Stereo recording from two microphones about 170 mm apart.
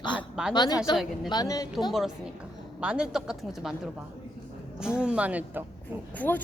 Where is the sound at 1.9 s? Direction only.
Centre (ahead or behind).